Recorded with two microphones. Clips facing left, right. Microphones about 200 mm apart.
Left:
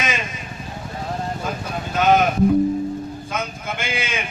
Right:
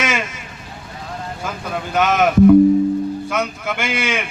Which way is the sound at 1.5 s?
75° right (ahead or behind).